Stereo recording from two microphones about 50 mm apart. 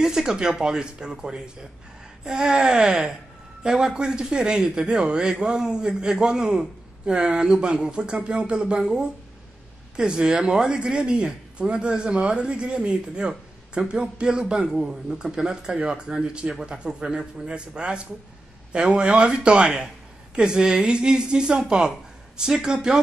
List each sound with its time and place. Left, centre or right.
0.0 s a man's voice: centre